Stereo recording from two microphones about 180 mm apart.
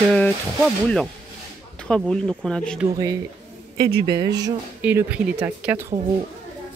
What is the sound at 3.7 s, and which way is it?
Speech, 60° right (ahead or behind).